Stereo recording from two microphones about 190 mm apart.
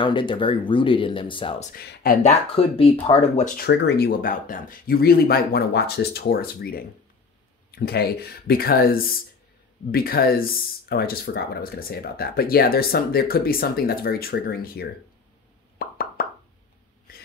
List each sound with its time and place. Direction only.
0.0 s speech: 25° left (ahead or behind)
1.8 s speech: 55° left (ahead or behind)
2.2 s speech: 30° left (ahead or behind)
3.5 s speech: 60° left (ahead or behind)
15.8 s plop: 50° left (ahead or behind)